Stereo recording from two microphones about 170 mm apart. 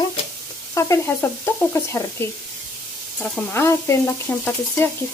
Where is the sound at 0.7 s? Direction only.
15° left (ahead or behind).